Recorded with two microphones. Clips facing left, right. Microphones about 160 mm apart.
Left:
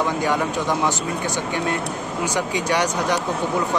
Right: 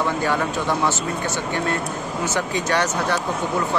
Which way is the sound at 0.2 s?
15° left (ahead or behind).